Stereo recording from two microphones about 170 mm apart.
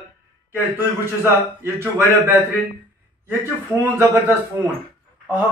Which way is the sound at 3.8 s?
10° right (ahead or behind).